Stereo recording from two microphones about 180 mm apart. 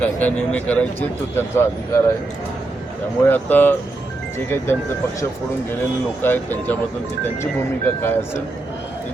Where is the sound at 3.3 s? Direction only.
10° left (ahead or behind).